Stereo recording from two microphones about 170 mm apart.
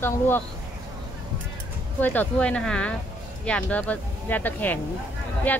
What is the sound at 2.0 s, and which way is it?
Speech, 10° left (ahead or behind).